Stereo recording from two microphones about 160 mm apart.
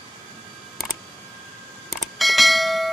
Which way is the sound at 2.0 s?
Centre (ahead or behind).